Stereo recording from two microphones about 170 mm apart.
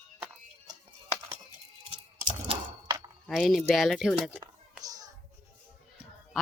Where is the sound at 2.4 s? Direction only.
30° right (ahead or behind).